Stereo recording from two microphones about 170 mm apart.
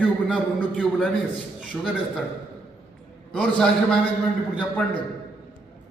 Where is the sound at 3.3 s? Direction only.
5° left (ahead or behind).